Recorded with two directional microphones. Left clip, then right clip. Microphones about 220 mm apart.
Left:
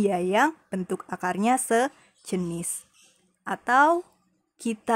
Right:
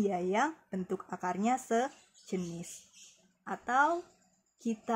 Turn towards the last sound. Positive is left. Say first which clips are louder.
# left 6 dB
turn(degrees=45)  # may be behind; listen again after turning